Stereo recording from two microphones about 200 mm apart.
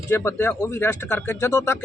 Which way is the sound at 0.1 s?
10° left (ahead or behind).